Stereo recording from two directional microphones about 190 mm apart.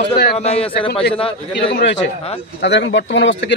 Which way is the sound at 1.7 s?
65° left (ahead or behind).